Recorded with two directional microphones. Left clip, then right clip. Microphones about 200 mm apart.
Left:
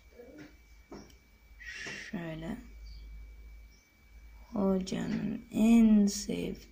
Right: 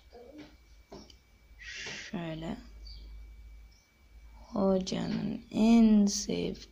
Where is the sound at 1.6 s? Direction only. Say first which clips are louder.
Right 1 dB; 10° right (ahead or behind).